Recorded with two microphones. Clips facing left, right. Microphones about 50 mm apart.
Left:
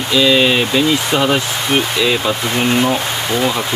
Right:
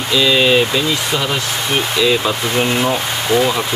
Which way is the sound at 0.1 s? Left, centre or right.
Centre.